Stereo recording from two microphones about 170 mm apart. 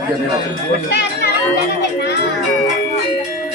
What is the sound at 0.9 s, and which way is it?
Speech, 85° left.